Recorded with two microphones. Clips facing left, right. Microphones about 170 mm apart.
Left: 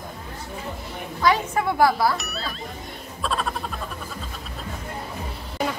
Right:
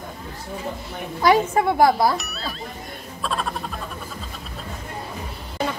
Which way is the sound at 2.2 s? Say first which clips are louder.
Even; centre (ahead or behind).